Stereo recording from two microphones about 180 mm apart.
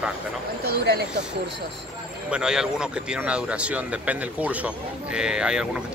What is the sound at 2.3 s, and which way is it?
Speech, 5° right (ahead or behind).